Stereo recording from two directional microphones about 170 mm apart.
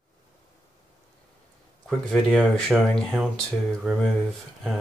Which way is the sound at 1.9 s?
Centre (ahead or behind).